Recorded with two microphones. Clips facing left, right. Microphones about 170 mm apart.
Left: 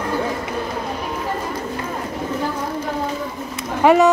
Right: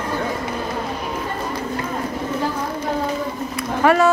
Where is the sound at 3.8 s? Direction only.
20° left (ahead or behind).